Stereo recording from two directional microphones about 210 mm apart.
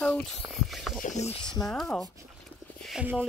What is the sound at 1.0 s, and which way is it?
Speech, 35° left (ahead or behind).